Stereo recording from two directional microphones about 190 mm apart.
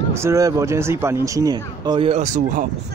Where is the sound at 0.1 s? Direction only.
15° right (ahead or behind); by 2.6 s 40° right (ahead or behind).